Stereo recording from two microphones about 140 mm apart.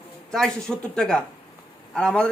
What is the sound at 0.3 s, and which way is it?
A man's voice, 5° left (ahead or behind).